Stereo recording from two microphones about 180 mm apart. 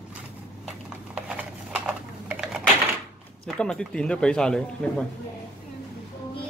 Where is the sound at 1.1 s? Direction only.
5° right (ahead or behind).